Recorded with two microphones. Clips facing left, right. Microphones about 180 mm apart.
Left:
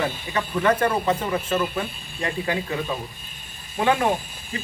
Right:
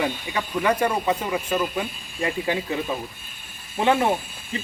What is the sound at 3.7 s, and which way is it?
Speech, 20° right (ahead or behind).